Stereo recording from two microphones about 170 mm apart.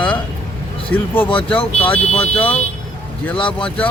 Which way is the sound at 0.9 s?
10° left (ahead or behind).